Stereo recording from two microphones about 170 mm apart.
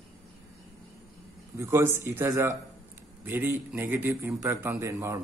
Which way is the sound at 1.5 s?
15° right (ahead or behind).